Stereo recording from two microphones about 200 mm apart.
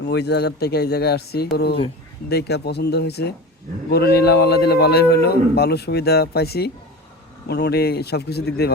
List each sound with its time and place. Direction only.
0.0 s a man's voice: 55° left (ahead or behind)